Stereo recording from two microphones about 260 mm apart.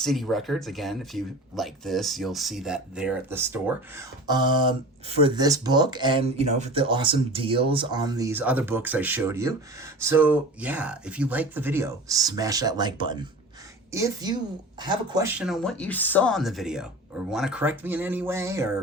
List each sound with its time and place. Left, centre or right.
0.0 s speech: centre
15.4 s speech: centre